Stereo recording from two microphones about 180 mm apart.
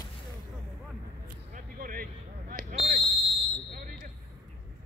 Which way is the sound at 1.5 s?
50° right (ahead or behind).